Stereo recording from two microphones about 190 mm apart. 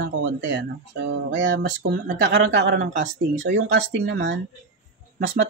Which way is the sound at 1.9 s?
65° right (ahead or behind).